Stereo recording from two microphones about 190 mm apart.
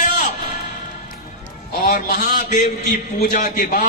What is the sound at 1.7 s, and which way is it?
A man's voice, 50° left (ahead or behind).